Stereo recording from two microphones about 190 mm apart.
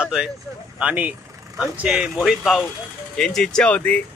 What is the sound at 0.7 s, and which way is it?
Speech, 5° right (ahead or behind).